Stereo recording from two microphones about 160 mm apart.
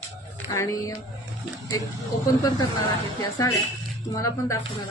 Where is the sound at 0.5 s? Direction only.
20° left (ahead or behind).